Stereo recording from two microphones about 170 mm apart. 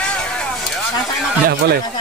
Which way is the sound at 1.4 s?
65° right (ahead or behind).